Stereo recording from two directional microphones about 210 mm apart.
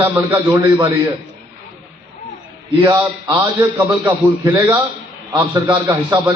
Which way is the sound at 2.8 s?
20° right (ahead or behind).